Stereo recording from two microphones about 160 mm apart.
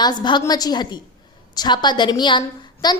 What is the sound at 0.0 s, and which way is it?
A woman's voice, 25° left (ahead or behind).